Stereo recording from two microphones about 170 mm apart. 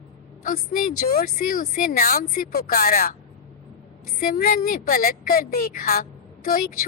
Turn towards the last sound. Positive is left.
turn(degrees=55)  # may be behind; listen again after turning